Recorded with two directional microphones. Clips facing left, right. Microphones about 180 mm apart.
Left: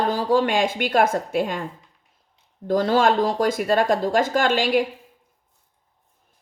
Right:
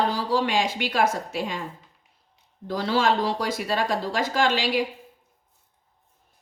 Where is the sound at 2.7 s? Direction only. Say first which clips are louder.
Left 5 dB; 50° left (ahead or behind).